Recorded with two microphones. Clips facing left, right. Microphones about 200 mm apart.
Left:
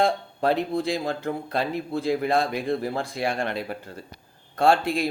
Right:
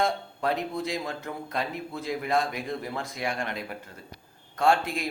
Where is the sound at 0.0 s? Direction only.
30° left (ahead or behind).